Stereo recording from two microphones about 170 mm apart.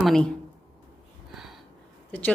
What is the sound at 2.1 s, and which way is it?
Speech, 10° left (ahead or behind).